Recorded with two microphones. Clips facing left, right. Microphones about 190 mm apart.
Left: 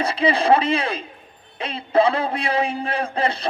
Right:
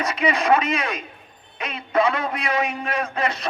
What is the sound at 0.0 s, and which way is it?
A man's voice, 30° left (ahead or behind).